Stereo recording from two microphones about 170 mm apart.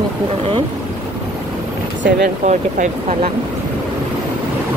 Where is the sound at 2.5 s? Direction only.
45° right (ahead or behind).